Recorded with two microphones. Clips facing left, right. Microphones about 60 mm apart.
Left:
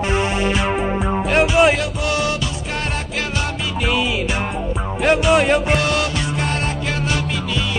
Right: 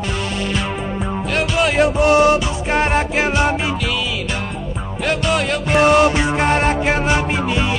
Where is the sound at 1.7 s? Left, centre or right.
Right.